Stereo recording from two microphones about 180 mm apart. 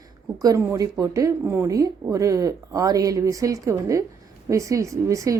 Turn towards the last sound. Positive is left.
turn(degrees=-15)  # may be behind; listen again after turning